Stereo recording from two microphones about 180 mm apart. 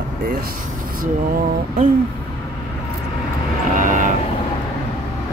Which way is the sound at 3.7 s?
45° right (ahead or behind).